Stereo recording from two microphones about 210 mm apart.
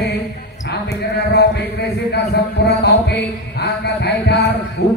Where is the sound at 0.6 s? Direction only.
50° left (ahead or behind).